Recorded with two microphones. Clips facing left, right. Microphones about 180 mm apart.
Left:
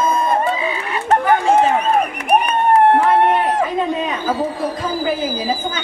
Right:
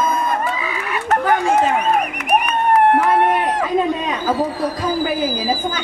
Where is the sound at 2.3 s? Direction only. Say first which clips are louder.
Left 2 dB; 25° left (ahead or behind).